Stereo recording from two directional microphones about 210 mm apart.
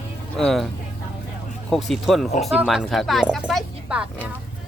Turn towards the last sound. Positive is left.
turn(degrees=-5)  # may be behind; listen again after turning